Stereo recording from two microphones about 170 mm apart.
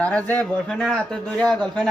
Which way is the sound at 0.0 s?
10° left (ahead or behind).